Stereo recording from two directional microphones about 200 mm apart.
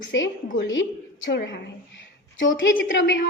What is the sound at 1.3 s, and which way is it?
Speech, 60° left (ahead or behind).